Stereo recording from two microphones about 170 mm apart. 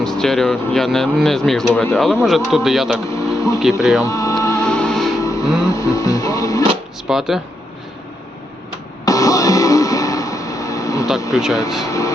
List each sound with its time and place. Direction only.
0.0 s speech: 5° left (ahead or behind)
3.0 s speech: 20° left (ahead or behind)
3.3 s a sound: 20° left (ahead or behind)
4.6 s music: 5° left (ahead or behind)
5.2 s music: 20° left (ahead or behind)
7.1 s speech: centre (ahead or behind)
9.0 s music: 20° left (ahead or behind)
11.3 s speech: centre (ahead or behind)
11.9 s speech: 20° left (ahead or behind)